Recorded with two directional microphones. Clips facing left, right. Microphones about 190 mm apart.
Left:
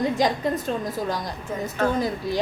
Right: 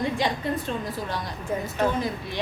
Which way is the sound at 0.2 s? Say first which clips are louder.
Left 5 dB; 40° left (ahead or behind).